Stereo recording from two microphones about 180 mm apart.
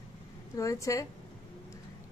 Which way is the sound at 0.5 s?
15° left (ahead or behind).